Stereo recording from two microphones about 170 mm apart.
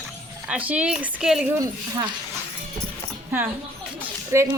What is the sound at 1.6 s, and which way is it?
Speech, 25° right (ahead or behind).